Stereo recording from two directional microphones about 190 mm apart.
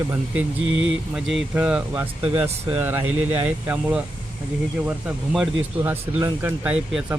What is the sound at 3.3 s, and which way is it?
Speech, 10° right (ahead or behind).